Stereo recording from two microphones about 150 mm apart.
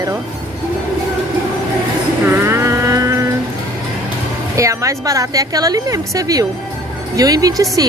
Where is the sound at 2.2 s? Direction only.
15° right (ahead or behind).